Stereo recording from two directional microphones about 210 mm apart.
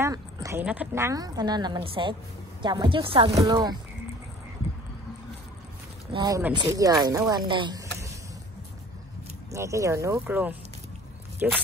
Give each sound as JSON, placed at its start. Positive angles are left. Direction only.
{"t": 0.0, "sound": "speech", "side_deg": -15}
{"t": 6.1, "sound": "speech", "side_deg": -15}
{"t": 9.5, "sound": "speech", "side_deg": -15}